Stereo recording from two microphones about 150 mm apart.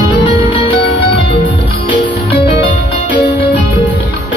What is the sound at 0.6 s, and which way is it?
Music, 35° left (ahead or behind).